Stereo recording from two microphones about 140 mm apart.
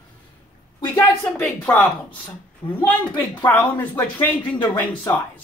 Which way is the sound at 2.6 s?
35° left (ahead or behind).